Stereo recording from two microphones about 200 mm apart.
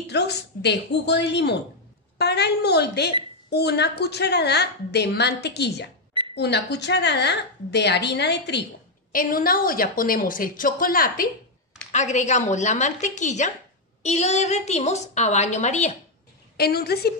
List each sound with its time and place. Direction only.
0.0 s a woman's voice: 55° left (ahead or behind)
9.1 s a woman's voice: 45° left (ahead or behind)
16.5 s a woman's voice: 50° left (ahead or behind)